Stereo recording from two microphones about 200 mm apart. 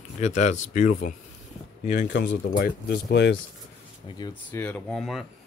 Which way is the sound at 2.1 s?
55° left (ahead or behind).